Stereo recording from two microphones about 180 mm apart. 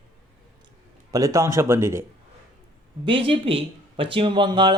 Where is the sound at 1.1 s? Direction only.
20° right (ahead or behind).